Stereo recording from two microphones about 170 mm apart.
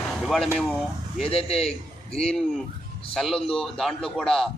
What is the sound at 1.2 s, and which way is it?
A man's voice, 35° left (ahead or behind).